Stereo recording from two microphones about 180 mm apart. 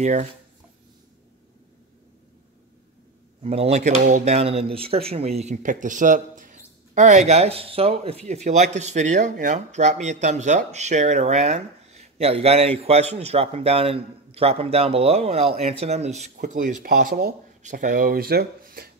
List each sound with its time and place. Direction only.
0.0 s speech: 40° right (ahead or behind)
3.4 s speech: 35° right (ahead or behind); by 18.9 s 55° right (ahead or behind)